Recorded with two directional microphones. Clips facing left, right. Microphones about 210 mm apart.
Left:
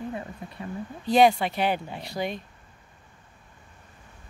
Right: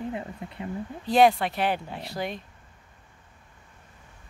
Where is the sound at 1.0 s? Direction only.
Centre (ahead or behind).